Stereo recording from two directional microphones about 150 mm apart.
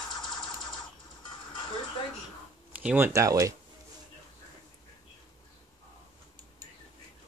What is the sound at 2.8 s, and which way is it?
Speech, 10° right (ahead or behind).